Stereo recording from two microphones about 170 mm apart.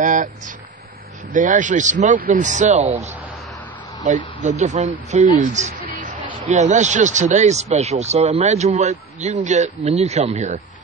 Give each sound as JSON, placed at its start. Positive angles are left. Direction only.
{"t": 0.0, "sound": "a sound", "side_deg": -50}
{"t": 1.3, "sound": "speech", "side_deg": -50}
{"t": 4.1, "sound": "speech", "side_deg": -45}